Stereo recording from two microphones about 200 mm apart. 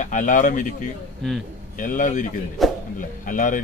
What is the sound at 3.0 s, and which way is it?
Speech, 40° left (ahead or behind).